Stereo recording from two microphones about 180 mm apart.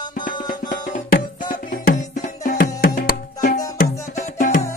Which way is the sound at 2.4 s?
50° left (ahead or behind).